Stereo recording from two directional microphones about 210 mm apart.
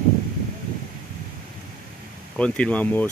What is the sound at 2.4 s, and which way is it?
Speech, 5° left (ahead or behind).